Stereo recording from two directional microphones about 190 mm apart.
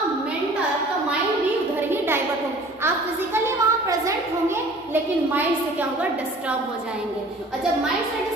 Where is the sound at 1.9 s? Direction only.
10° right (ahead or behind).